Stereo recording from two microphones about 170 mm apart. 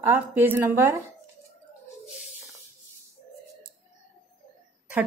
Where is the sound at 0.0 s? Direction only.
10° right (ahead or behind).